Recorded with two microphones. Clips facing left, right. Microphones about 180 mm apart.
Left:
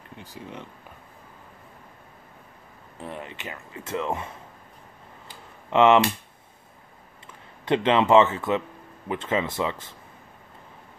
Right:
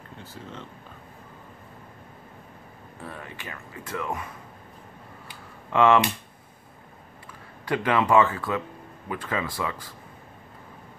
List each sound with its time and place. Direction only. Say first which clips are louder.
0.2 s speech: left 2 dB; 15° left (ahead or behind)
3.0 s speech: left 3 dB; 20° left (ahead or behind)
5.7 s speech: left 2 dB; 20° left (ahead or behind)
7.6 s speech: left 3 dB; 25° left (ahead or behind)